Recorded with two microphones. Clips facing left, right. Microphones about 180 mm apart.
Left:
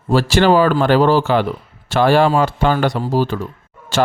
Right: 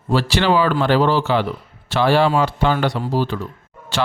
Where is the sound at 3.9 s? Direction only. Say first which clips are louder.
Left 5 dB; 45° left (ahead or behind).